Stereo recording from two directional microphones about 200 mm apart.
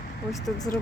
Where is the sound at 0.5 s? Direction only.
20° left (ahead or behind).